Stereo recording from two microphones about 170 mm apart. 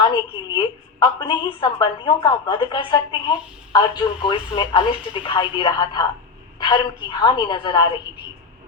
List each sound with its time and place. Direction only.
0.0 s a woman's voice: 30° left (ahead or behind)